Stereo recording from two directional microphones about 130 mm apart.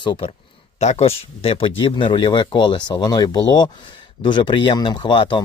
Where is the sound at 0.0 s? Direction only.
35° left (ahead or behind).